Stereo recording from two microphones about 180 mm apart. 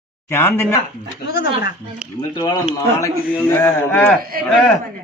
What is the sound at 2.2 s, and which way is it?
Speech, 20° left (ahead or behind).